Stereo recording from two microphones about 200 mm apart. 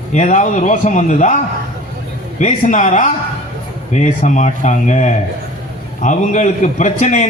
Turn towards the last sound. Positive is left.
turn(degrees=35)  # may be behind; listen again after turning